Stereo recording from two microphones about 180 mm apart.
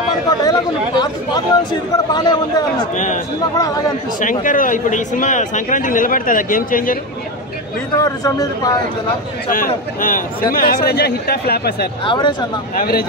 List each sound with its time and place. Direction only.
0.4 s speech: 20° left (ahead or behind)
4.2 s a man's voice: 45° left (ahead or behind)
8.0 s speech: 20° left (ahead or behind)
10.0 s speech: 50° left (ahead or behind)
12.0 s speech: 25° left (ahead or behind)
12.7 s speech: 55° left (ahead or behind)